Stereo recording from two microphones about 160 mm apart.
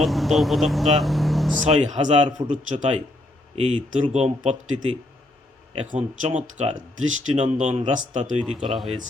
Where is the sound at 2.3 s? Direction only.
25° right (ahead or behind).